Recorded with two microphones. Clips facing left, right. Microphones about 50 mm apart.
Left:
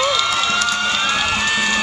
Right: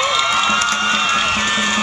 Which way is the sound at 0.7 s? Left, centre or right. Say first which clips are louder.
Right 2 dB; right.